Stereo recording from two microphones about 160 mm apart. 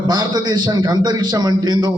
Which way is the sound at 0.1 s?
25° right (ahead or behind).